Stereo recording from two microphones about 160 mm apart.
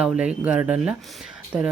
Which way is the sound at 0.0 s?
5° right (ahead or behind).